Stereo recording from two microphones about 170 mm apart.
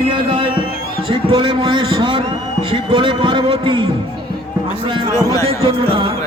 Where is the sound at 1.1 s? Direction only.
25° right (ahead or behind).